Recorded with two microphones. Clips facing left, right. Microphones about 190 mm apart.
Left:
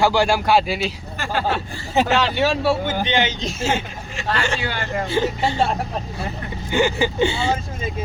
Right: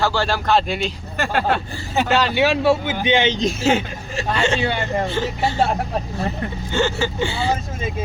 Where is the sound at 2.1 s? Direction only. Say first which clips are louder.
Right 2 dB; centre (ahead or behind).